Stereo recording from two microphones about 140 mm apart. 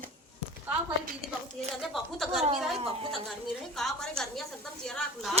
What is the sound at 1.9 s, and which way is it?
Speech, centre (ahead or behind).